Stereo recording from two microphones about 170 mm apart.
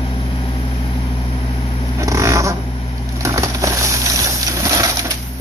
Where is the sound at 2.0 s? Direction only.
20° right (ahead or behind).